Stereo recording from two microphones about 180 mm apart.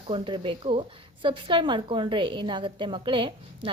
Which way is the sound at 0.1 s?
30° right (ahead or behind).